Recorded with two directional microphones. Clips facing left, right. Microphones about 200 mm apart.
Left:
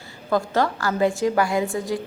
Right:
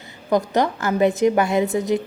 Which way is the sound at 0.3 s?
20° right (ahead or behind).